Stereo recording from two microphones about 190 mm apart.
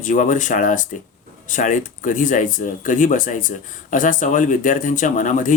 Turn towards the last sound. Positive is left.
turn(degrees=45)  # may be behind; listen again after turning